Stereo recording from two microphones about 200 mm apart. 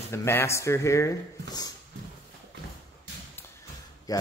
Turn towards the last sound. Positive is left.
turn(degrees=20)  # may be behind; listen again after turning